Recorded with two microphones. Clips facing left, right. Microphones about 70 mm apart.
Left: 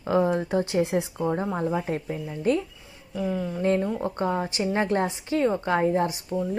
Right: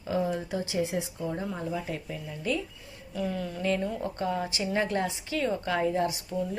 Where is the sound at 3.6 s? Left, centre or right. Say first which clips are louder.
Left 5 dB; left.